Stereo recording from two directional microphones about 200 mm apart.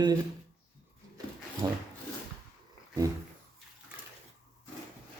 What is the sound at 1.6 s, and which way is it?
Dog, 20° right (ahead or behind).